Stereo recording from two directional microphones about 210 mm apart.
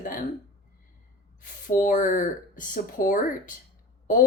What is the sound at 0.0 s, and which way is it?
Hiccup, 40° left (ahead or behind).